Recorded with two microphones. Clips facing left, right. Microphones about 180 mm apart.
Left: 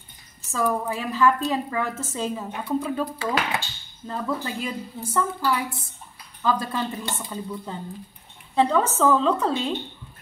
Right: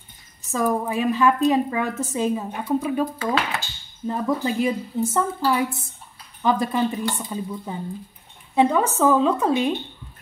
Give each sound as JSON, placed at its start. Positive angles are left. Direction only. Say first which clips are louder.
{"t": 0.5, "sound": "a woman's voice", "louder": "right 2 dB", "side_deg": -15}